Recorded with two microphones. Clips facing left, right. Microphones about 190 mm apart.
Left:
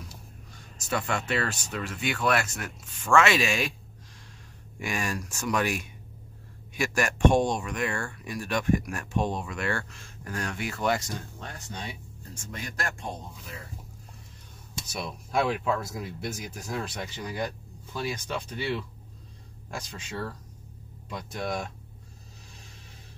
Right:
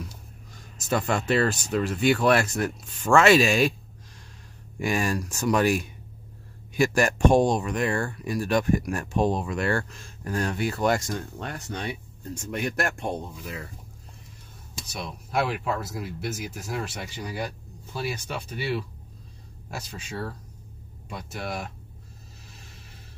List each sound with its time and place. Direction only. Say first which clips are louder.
0.8 s speech: right 5 dB; 35° right (ahead or behind)
4.7 s speech: right 6 dB; 35° right (ahead or behind)
11.3 s speech: right 6 dB; 70° right (ahead or behind)
14.9 s speech: even; centre (ahead or behind)